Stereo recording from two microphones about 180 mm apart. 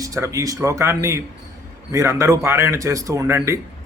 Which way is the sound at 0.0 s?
20° right (ahead or behind).